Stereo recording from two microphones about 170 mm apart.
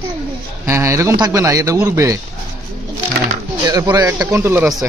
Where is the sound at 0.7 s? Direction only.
15° right (ahead or behind).